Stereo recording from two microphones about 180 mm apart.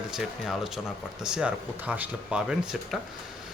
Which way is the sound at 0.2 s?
Centre (ahead or behind).